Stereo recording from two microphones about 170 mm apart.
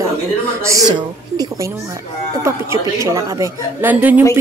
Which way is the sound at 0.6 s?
20° right (ahead or behind).